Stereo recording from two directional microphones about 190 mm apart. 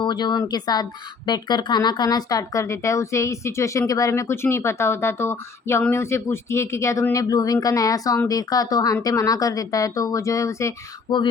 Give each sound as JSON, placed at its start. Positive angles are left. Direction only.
{"t": 0.0, "sound": "speech", "side_deg": 20}